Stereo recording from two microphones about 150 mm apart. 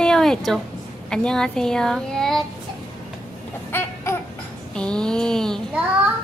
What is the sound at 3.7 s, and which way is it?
Baby cry, 15° left (ahead or behind).